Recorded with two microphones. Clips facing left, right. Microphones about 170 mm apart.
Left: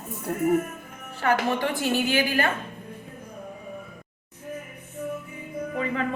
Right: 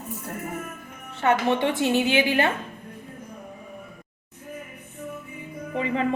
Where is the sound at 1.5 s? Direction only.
25° right (ahead or behind).